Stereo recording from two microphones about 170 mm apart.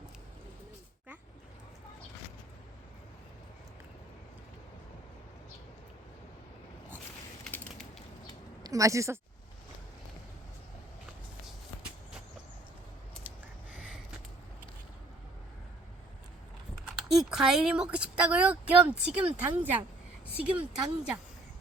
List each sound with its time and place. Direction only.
7.4 s mechanisms: 10° left (ahead or behind)
8.6 s a woman's voice: 20° right (ahead or behind)
13.7 s a sound: 5° right (ahead or behind)
16.9 s speech: centre (ahead or behind)